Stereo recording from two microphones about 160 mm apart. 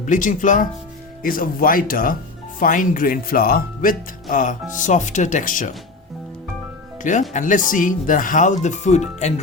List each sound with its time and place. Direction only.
0.0 s speech: 55° left (ahead or behind)
7.0 s speech: 50° left (ahead or behind)